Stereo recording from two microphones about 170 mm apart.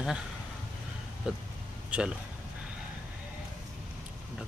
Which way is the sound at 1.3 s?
5° right (ahead or behind).